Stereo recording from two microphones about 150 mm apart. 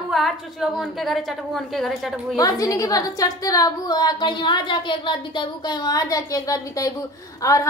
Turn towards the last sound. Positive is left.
turn(degrees=20)  # may be behind; listen again after turning